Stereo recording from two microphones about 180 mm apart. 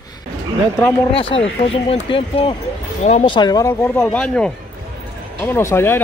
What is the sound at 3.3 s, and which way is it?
Speech, 25° left (ahead or behind).